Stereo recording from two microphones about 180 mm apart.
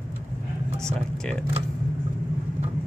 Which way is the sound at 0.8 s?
5° left (ahead or behind).